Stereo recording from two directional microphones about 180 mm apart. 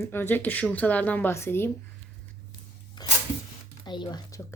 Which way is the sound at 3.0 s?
25° left (ahead or behind).